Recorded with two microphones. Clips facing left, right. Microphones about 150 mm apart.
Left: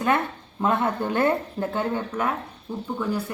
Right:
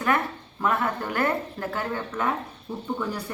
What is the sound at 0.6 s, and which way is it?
A woman's voice, 25° left (ahead or behind).